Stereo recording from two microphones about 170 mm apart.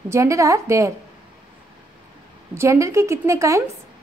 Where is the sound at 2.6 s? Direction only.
15° right (ahead or behind).